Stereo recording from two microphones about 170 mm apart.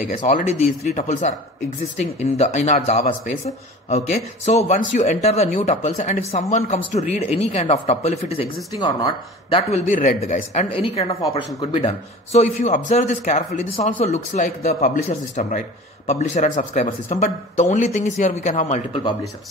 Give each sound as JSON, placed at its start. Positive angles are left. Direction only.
{"t": 0.1, "sound": "a man's voice", "side_deg": 50}
{"t": 8.7, "sound": "speech", "side_deg": 25}
{"t": 9.8, "sound": "a man's voice", "side_deg": 50}